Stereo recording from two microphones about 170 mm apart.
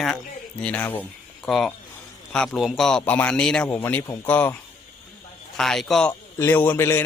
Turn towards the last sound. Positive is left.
turn(degrees=15)  # may be behind; listen again after turning